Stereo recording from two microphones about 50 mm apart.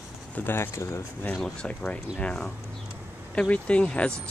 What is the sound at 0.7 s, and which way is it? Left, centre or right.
Speech, left.